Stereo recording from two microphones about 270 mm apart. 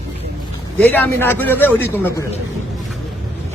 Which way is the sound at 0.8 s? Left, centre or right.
Centre.